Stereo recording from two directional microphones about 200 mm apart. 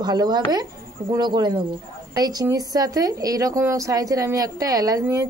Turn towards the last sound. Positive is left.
turn(degrees=-15)  # may be behind; listen again after turning